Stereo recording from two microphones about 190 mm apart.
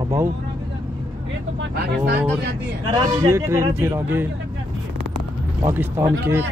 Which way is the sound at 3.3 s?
15° right (ahead or behind).